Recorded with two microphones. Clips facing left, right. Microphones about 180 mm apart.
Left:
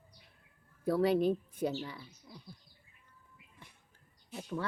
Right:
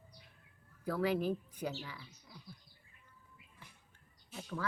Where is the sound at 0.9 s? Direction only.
30° left (ahead or behind).